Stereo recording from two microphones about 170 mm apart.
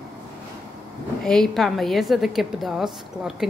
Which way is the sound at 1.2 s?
5° left (ahead or behind).